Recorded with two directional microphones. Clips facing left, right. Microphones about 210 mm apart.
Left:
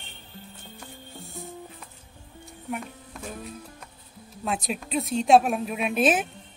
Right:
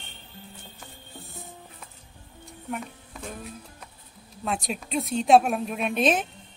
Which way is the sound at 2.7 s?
Centre (ahead or behind).